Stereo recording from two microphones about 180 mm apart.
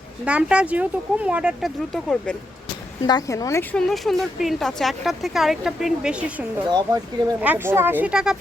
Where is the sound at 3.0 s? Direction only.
20° left (ahead or behind).